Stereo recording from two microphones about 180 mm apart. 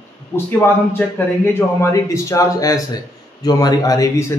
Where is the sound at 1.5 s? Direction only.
15° left (ahead or behind).